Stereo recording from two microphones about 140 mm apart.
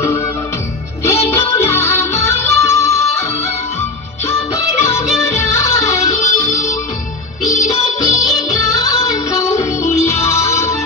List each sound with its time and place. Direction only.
1.0 s music: 20° left (ahead or behind)
5.5 s music: 20° left (ahead or behind)
8.0 s music: 25° left (ahead or behind)